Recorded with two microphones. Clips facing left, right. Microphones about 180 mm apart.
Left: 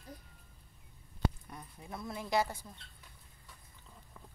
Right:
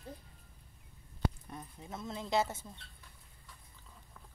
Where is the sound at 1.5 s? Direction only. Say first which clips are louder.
Right 1 dB; 20° right (ahead or behind).